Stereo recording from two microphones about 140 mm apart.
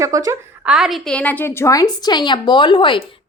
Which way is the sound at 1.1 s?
10° left (ahead or behind).